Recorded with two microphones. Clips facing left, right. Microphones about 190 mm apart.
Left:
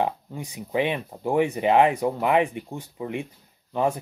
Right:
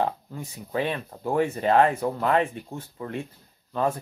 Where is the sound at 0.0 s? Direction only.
15° left (ahead or behind).